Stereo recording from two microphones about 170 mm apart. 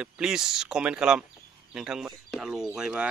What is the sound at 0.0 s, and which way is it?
Speech, 5° right (ahead or behind).